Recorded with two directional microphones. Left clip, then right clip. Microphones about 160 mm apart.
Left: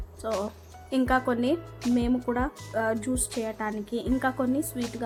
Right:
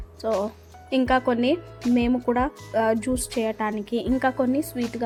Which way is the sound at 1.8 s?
5° left (ahead or behind).